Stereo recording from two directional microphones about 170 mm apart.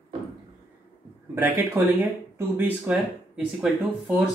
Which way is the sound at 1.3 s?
15° right (ahead or behind).